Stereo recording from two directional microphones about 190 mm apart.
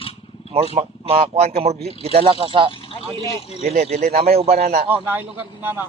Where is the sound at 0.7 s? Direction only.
30° right (ahead or behind).